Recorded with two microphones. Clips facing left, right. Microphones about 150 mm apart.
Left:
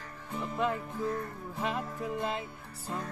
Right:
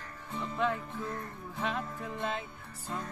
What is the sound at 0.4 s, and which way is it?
Music, 5° left (ahead or behind).